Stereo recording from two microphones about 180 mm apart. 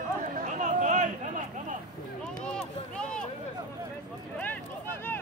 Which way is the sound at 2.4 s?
5° left (ahead or behind).